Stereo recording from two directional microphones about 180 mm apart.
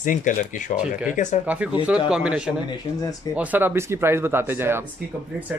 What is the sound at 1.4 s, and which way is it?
Speech, 10° right (ahead or behind).